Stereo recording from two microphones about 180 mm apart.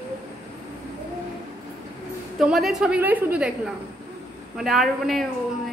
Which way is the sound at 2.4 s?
Centre (ahead or behind).